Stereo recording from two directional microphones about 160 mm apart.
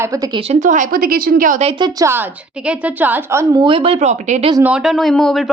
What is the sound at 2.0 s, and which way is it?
Speech, 10° right (ahead or behind).